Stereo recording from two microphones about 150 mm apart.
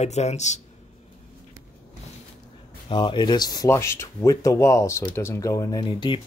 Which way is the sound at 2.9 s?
35° left (ahead or behind).